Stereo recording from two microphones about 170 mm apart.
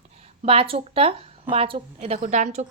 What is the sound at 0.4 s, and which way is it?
A woman's voice, 35° right (ahead or behind).